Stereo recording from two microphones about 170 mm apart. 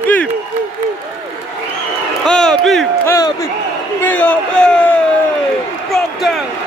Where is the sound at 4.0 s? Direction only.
10° left (ahead or behind).